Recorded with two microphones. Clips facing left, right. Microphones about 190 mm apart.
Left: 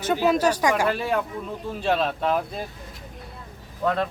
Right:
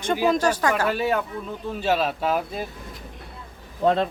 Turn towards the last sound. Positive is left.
turn(degrees=-25)  # may be behind; listen again after turning